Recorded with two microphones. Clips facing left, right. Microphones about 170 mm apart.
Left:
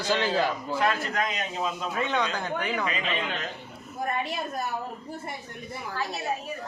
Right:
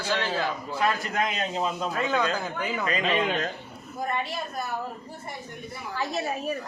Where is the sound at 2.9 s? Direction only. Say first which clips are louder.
Right 5 dB; 40° right (ahead or behind).